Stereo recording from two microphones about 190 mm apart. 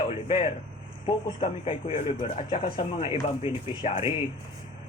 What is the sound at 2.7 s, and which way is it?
Speech, 30° left (ahead or behind).